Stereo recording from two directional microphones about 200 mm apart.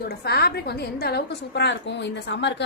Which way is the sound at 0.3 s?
55° left (ahead or behind).